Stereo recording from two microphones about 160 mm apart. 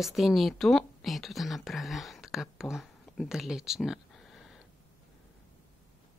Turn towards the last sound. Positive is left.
turn(degrees=0)  # may be behind; listen again after turning